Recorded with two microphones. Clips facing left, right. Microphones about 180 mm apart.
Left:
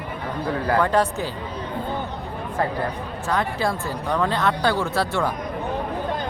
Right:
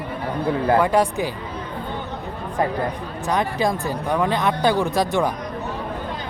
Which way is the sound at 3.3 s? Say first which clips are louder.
Right 2 dB; 15° right (ahead or behind).